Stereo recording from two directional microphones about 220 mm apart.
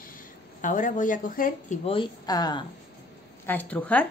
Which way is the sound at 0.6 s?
35° left (ahead or behind).